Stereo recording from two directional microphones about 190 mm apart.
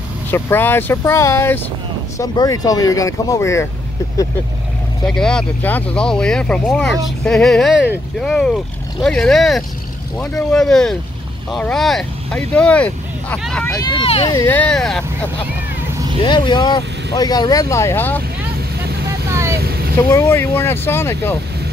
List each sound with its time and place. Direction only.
0.3 s speech: 10° left (ahead or behind)
5.0 s speech: 5° left (ahead or behind)
13.7 s speech: 25° left (ahead or behind)
14.3 s speech: 10° left (ahead or behind)
16.2 s speech: 25° left (ahead or behind)
19.0 s vehicle: 15° right (ahead or behind)
19.6 s vehicle: 55° right (ahead or behind)
20.1 s speech: 15° left (ahead or behind)